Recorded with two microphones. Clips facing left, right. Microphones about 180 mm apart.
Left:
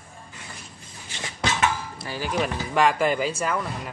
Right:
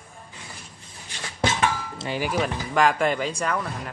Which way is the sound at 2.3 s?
Centre (ahead or behind).